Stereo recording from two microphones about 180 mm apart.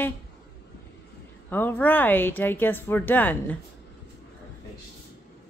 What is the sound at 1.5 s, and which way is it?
Speech, 10° left (ahead or behind).